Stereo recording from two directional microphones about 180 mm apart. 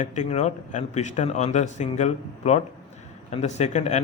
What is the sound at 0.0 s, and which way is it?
A man's voice, 40° left (ahead or behind).